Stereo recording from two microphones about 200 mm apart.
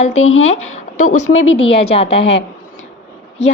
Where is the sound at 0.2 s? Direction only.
80° left.